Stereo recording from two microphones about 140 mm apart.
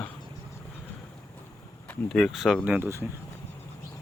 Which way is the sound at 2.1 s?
Centre (ahead or behind).